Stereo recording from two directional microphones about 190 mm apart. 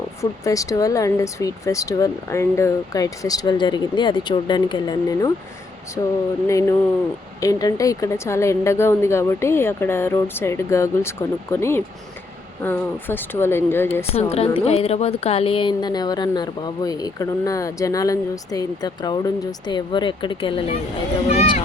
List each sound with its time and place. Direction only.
0.2 s speech: 15° left (ahead or behind)
6.5 s speech: 15° left (ahead or behind)
14.1 s a woman's voice: 30° left (ahead or behind)